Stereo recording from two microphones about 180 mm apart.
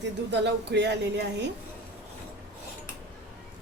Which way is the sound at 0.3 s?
70° right (ahead or behind).